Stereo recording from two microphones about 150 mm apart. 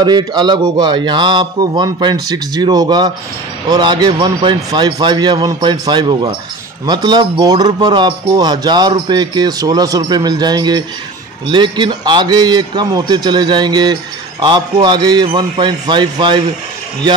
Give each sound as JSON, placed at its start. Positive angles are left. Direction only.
{"t": 0.0, "sound": "a man's voice", "side_deg": -30}